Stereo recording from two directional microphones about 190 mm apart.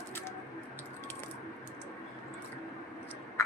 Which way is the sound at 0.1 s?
10° left (ahead or behind).